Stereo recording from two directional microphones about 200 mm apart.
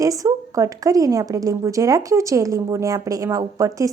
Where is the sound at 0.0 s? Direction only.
15° right (ahead or behind).